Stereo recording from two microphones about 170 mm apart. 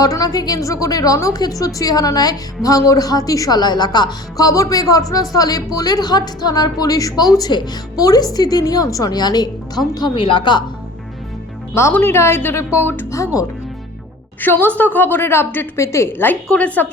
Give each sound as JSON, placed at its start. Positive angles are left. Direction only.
{"t": 0.0, "sound": "a woman's voice", "side_deg": 20}
{"t": 11.7, "sound": "a woman's voice", "side_deg": 15}
{"t": 14.4, "sound": "a woman's voice", "side_deg": 10}